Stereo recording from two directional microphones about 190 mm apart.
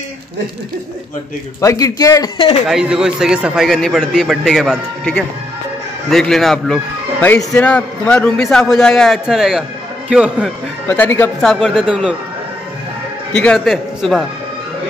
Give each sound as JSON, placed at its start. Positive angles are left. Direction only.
{"t": 1.6, "sound": "speech", "side_deg": 15}
{"t": 2.7, "sound": "a man's voice", "side_deg": -5}
{"t": 10.9, "sound": "a man's voice", "side_deg": 10}
{"t": 13.3, "sound": "a man's voice", "side_deg": 5}